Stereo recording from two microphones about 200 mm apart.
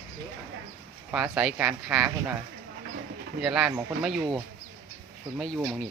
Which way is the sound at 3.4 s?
Centre (ahead or behind).